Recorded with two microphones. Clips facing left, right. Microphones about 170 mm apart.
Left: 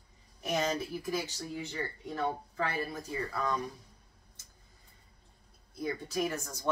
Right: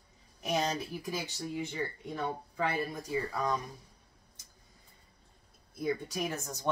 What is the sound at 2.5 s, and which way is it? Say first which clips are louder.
Speech: right 1 dB; 15° right (ahead or behind).